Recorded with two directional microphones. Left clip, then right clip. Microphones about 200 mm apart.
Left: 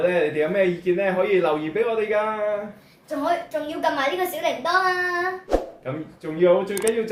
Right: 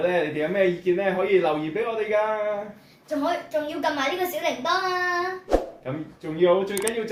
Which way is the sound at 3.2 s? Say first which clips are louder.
Left 2 dB; centre (ahead or behind).